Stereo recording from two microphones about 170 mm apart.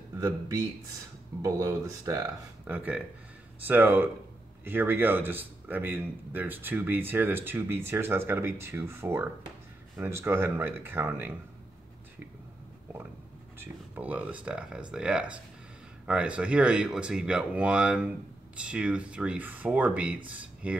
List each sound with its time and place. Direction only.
1.4 s speech: 20° right (ahead or behind)
13.6 s speech: 10° right (ahead or behind)